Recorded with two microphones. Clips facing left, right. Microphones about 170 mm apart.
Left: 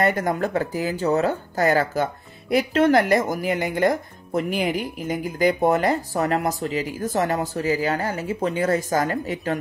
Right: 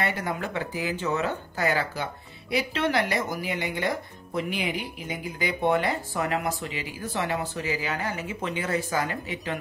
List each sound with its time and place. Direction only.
0.0 s speech: 45° left (ahead or behind)